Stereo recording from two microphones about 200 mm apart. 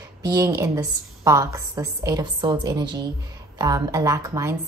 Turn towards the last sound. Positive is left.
turn(degrees=-15)  # may be behind; listen again after turning